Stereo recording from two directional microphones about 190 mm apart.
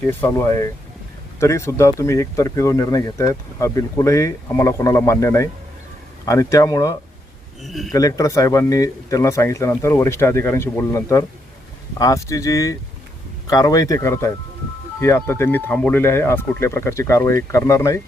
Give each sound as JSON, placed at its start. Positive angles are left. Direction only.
{"t": 0.1, "sound": "speech", "side_deg": 15}
{"t": 7.6, "sound": "speech", "side_deg": 0}
{"t": 7.9, "sound": "speech", "side_deg": 20}